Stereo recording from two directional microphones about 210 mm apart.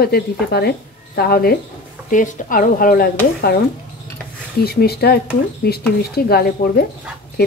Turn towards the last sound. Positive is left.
turn(degrees=45)  # may be behind; listen again after turning